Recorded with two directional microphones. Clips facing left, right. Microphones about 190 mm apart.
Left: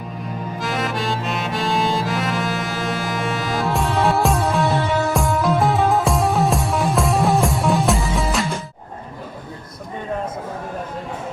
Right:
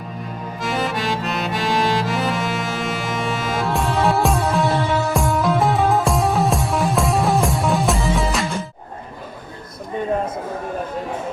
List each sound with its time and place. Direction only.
0.6 s accordion: centre (ahead or behind)